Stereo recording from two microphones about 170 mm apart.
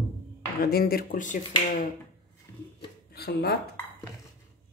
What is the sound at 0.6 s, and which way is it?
Speech, 65° left (ahead or behind).